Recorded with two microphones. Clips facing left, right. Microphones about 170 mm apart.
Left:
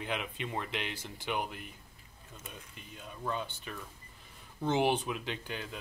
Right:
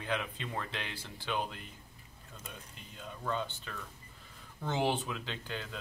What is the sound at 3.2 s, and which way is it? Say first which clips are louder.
Speech: even; 15° left (ahead or behind).